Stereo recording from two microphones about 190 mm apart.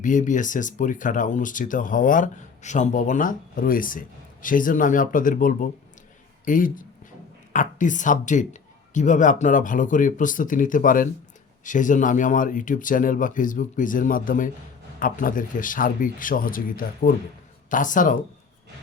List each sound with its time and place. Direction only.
0.0 s a woman's voice: 40° left (ahead or behind)